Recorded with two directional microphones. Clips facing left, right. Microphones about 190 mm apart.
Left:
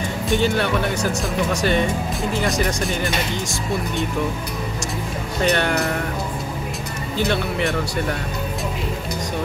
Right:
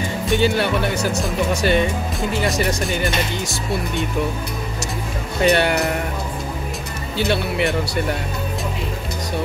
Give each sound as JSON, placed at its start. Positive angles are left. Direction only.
{"t": 0.3, "sound": "speech", "side_deg": -5}
{"t": 5.4, "sound": "speech", "side_deg": -5}
{"t": 7.2, "sound": "speech", "side_deg": -5}